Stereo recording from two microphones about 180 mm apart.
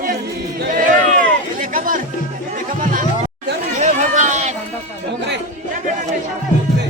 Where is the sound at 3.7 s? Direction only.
40° right (ahead or behind).